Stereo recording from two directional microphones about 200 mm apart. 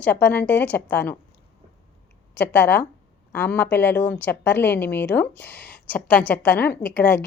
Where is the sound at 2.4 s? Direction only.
10° left (ahead or behind).